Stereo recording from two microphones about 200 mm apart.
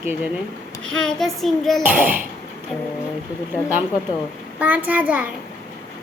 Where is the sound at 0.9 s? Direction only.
Centre (ahead or behind).